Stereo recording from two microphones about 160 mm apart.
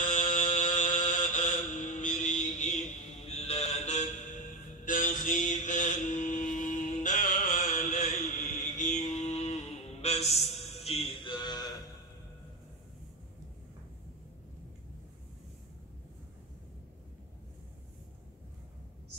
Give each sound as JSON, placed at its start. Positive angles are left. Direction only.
{"t": 0.0, "sound": "mantra", "side_deg": 50}
{"t": 3.2, "sound": "music", "side_deg": 40}
{"t": 4.8, "sound": "mantra", "side_deg": 55}